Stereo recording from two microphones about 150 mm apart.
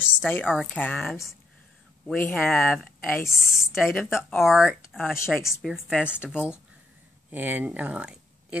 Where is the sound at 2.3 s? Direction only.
Centre (ahead or behind).